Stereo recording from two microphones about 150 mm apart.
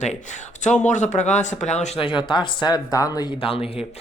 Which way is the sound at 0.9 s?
55° left (ahead or behind).